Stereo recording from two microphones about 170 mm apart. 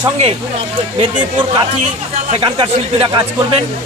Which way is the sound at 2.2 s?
35° right (ahead or behind).